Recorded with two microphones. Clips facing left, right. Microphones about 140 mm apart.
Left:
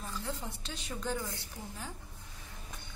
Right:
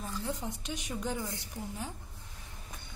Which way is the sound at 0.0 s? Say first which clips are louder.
Right 3 dB; 15° right (ahead or behind).